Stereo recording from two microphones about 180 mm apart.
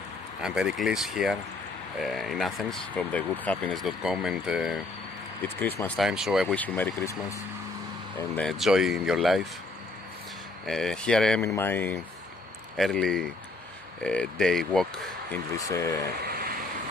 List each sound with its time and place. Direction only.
0.4 s speech: 5° right (ahead or behind)
5.6 s speech: 10° left (ahead or behind)
5.9 s speech: 5° right (ahead or behind)
6.5 s speech: 10° left (ahead or behind)
8.4 s speech: centre (ahead or behind)
10.7 s speech: 5° left (ahead or behind)
15.5 s speech: 15° left (ahead or behind)
16.2 s a sound: 55° right (ahead or behind)